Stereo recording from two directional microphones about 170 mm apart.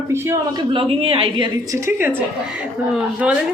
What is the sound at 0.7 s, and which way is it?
Speech, 35° right (ahead or behind).